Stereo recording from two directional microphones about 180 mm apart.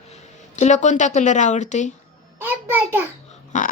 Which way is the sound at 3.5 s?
45° left (ahead or behind).